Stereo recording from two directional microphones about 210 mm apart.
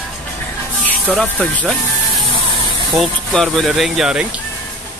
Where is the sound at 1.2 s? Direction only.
5° left (ahead or behind).